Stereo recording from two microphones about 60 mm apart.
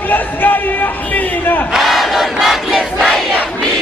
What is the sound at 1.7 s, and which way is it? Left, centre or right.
Crowd, centre.